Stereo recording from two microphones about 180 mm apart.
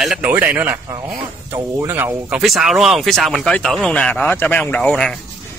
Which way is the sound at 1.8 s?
15° right (ahead or behind).